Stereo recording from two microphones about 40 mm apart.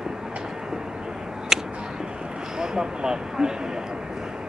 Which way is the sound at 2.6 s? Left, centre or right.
Centre.